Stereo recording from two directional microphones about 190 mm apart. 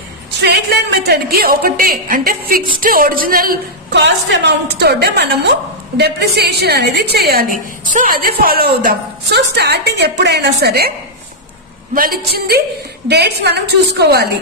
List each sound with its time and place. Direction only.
0.4 s a woman's voice: 60° right (ahead or behind)
11.9 s a woman's voice: 50° right (ahead or behind)